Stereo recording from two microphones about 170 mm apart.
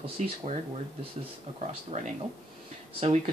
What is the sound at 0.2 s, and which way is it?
Speech, 45° right (ahead or behind).